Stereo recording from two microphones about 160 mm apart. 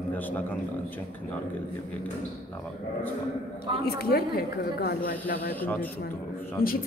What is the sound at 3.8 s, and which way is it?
A woman's voice, 80° left.